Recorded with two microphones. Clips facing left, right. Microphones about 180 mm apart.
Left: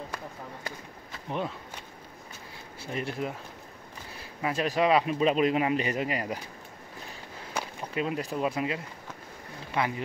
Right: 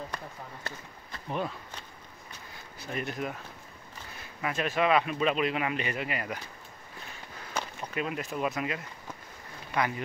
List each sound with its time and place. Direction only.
0.1 s a sound: 5° left (ahead or behind)
2.8 s speech: 30° left (ahead or behind)
7.9 s speech: 30° left (ahead or behind)